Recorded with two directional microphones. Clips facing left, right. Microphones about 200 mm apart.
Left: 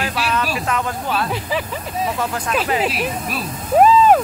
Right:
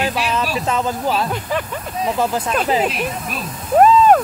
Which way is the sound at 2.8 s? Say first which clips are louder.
Right 1 dB; 5° left (ahead or behind).